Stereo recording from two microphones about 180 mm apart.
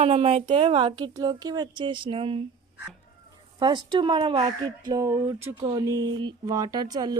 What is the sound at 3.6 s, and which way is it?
Speech, 25° right (ahead or behind).